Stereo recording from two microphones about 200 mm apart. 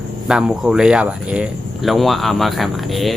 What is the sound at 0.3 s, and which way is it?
Speech, 5° right (ahead or behind).